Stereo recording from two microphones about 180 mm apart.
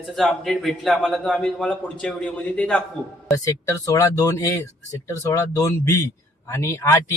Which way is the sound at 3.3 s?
15° left (ahead or behind).